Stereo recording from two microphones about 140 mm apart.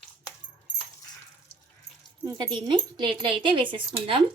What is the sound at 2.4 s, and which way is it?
Speech, 35° right (ahead or behind).